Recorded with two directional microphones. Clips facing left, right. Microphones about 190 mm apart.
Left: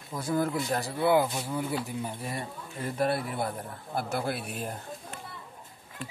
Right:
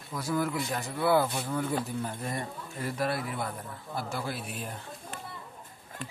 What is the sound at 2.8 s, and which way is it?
Speech, 30° left (ahead or behind).